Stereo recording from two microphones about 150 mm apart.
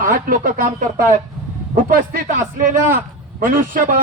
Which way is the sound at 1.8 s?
60° right (ahead or behind).